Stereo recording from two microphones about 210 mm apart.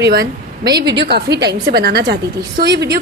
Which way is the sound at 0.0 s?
50° right (ahead or behind).